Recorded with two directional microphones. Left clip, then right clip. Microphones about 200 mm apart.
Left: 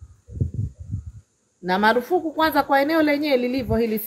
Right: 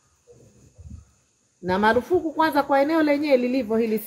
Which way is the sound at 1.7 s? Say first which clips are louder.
Left 1 dB; 10° left (ahead or behind).